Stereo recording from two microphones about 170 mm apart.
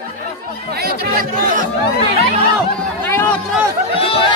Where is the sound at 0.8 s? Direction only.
60° right (ahead or behind).